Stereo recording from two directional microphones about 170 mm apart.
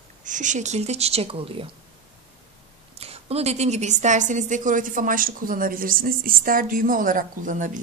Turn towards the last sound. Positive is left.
turn(degrees=-50)  # may be behind; listen again after turning